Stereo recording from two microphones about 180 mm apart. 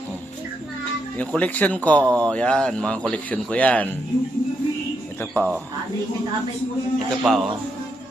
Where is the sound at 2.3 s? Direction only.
5° left (ahead or behind).